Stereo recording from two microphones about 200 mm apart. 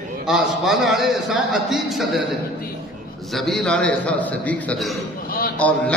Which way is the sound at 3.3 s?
Centre (ahead or behind).